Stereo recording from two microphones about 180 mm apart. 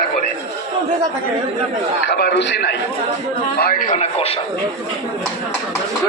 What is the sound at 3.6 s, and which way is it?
Speech, 50° left (ahead or behind).